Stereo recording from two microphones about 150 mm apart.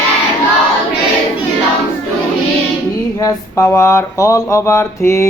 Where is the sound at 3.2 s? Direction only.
20° left (ahead or behind).